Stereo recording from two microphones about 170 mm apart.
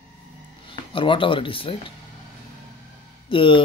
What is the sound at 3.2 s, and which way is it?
Speech, 30° left (ahead or behind).